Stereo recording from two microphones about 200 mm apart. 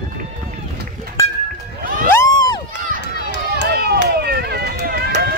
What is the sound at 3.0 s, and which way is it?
Run, 60° left (ahead or behind).